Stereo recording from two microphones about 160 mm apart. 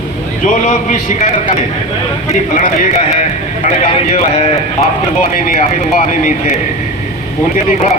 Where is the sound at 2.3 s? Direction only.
50° left (ahead or behind).